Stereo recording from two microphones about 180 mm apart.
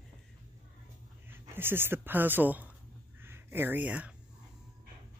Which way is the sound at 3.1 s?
10° right (ahead or behind).